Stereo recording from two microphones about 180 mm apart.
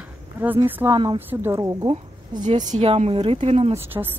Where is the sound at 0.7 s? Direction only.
10° right (ahead or behind).